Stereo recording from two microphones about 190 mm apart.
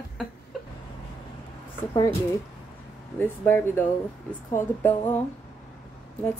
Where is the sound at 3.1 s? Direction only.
10° left (ahead or behind).